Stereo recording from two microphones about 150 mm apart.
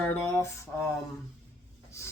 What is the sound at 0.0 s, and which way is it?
Speech, 10° left (ahead or behind).